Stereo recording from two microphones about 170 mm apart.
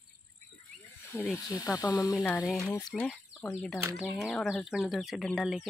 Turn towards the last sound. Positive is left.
turn(degrees=0)  # may be behind; listen again after turning